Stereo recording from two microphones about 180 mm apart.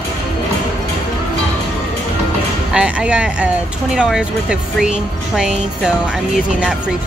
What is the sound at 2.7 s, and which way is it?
Speech, 5° right (ahead or behind).